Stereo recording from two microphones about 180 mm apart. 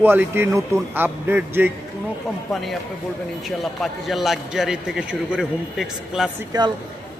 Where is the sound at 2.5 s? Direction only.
Centre (ahead or behind).